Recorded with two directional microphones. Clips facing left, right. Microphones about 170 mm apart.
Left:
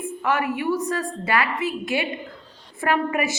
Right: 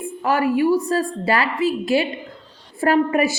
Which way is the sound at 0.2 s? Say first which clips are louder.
Right 6 dB; 35° right (ahead or behind).